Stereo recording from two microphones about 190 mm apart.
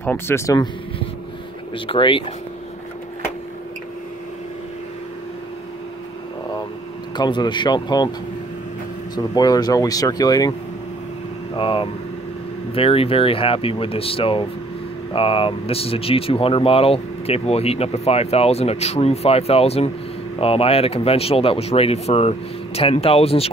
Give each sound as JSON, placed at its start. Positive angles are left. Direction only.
{"t": 0.0, "sound": "speech", "side_deg": 10}
{"t": 1.9, "sound": "speech", "side_deg": 25}
{"t": 7.2, "sound": "speech", "side_deg": 25}
{"t": 9.1, "sound": "speech", "side_deg": 20}
{"t": 11.5, "sound": "speech", "side_deg": 25}